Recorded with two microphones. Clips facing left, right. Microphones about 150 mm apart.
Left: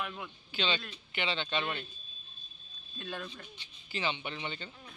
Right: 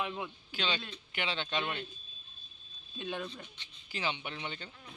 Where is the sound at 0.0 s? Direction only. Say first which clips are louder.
Right 3 dB; 25° right (ahead or behind).